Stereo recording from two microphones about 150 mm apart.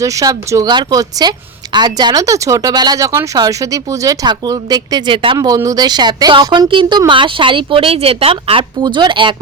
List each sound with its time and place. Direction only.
0.0 s speech: 20° right (ahead or behind)